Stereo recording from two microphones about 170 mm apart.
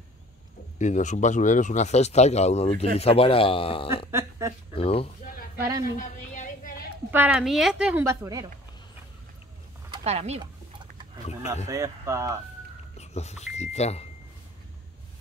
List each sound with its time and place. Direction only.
0.7 s speech: 45° left (ahead or behind)
4.1 s speech: 15° right (ahead or behind)
4.7 s speech: 35° left (ahead or behind)
5.9 s a sound: 45° left (ahead or behind)
7.1 s a woman's voice: 10° right (ahead or behind)
10.0 s speech: 40° right (ahead or behind)
11.4 s a woman's voice: 15° right (ahead or behind)
12.9 s speech: 40° left (ahead or behind)